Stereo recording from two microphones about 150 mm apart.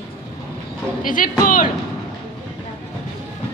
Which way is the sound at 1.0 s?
65° left (ahead or behind).